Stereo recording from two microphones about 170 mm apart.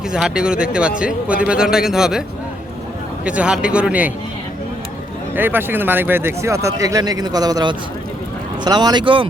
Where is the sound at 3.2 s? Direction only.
5° right (ahead or behind).